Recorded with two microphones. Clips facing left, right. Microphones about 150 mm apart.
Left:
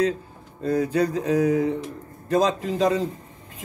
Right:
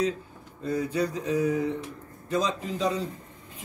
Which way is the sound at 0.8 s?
40° left (ahead or behind).